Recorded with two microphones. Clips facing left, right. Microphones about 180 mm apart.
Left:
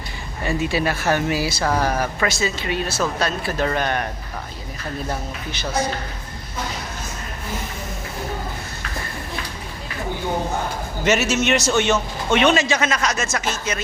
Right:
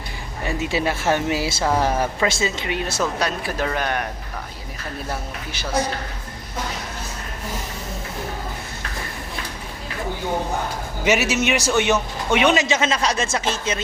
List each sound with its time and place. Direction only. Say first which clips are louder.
0.4 s a man's voice: left 1 dB; 20° right (ahead or behind)
11.0 s a man's voice: even; 15° right (ahead or behind)